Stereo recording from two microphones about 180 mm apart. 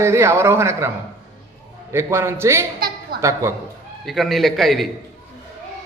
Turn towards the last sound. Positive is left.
turn(degrees=0)  # may be behind; listen again after turning